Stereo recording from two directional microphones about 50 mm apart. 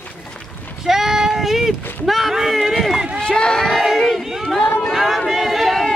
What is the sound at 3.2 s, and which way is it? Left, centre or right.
Crowd, centre.